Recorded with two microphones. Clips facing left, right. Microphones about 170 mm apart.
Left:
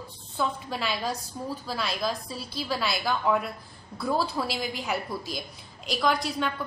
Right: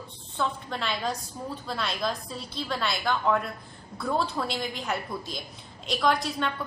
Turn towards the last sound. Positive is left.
turn(degrees=0)  # may be behind; listen again after turning